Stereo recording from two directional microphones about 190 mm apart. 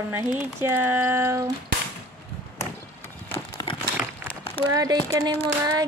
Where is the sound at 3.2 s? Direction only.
15° left (ahead or behind).